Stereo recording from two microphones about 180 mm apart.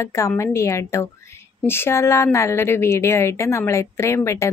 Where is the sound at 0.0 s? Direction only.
15° left (ahead or behind).